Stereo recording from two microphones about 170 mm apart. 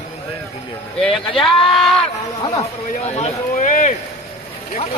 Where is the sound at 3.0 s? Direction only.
40° left (ahead or behind).